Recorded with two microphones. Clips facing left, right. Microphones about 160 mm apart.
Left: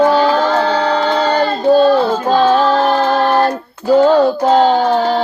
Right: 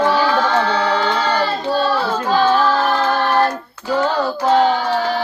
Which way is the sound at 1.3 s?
45° left (ahead or behind).